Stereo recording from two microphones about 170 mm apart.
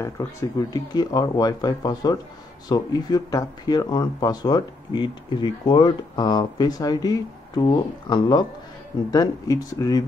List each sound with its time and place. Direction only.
0.0 s speech: 15° left (ahead or behind)